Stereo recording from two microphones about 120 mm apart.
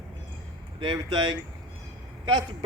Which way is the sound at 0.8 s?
40° right (ahead or behind).